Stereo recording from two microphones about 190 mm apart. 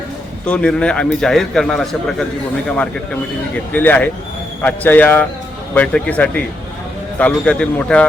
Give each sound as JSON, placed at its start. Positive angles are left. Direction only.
{"t": 0.4, "sound": "a man's voice", "side_deg": 5}